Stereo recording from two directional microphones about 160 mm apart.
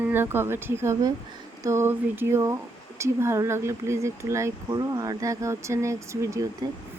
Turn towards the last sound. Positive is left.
turn(degrees=-20)  # may be behind; listen again after turning